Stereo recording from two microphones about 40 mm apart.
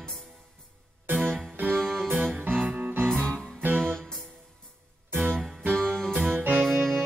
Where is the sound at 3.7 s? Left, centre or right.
Centre.